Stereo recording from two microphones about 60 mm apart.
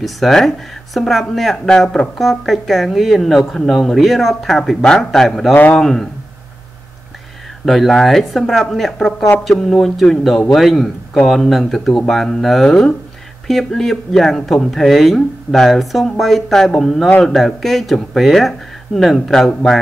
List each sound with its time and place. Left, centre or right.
0.0 s a man's voice: centre
5.5 s a man's voice: left
5.8 s speech: centre
7.6 s speech: centre